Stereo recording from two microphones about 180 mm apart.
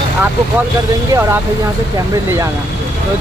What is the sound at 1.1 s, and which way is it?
Speech, 15° right (ahead or behind).